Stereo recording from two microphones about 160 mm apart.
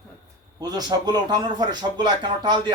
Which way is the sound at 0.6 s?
25° right (ahead or behind).